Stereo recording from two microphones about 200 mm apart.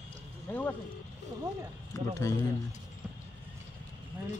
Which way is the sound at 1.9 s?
15° left (ahead or behind).